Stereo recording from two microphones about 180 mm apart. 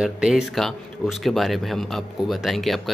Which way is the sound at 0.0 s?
5° right (ahead or behind).